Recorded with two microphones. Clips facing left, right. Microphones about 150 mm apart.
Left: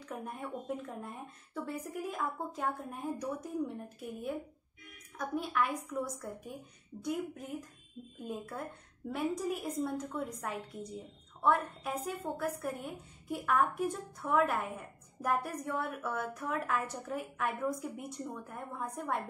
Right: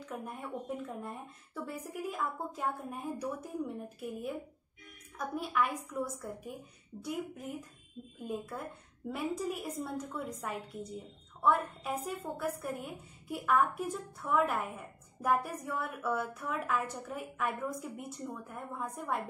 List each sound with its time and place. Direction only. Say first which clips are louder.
0.0 s a woman's voice: even; centre (ahead or behind)